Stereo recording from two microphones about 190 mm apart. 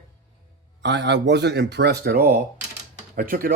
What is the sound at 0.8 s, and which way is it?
Speech, 65° right (ahead or behind).